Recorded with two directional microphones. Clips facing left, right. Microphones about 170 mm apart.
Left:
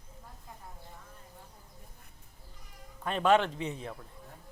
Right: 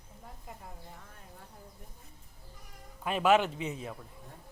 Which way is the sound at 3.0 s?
5° right (ahead or behind).